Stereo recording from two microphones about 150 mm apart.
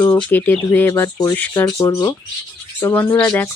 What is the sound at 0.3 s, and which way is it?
Speech, 15° left (ahead or behind).